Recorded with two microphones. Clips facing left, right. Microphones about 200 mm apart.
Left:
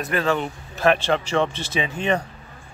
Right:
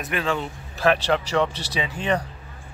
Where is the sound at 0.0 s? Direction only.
5° right (ahead or behind).